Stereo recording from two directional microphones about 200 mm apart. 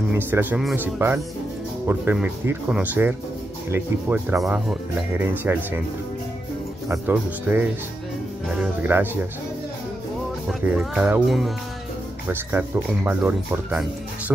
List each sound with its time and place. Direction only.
0.3 s speech: 10° right (ahead or behind)
6.9 s speech: 10° right (ahead or behind)
10.7 s speech: 5° right (ahead or behind)
12.3 s speech: 10° right (ahead or behind)